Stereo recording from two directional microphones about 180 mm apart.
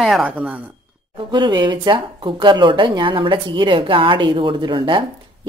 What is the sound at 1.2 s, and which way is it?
Speech, 25° right (ahead or behind).